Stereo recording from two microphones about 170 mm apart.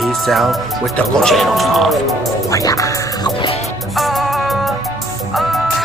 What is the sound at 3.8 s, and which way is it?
Music, centre (ahead or behind).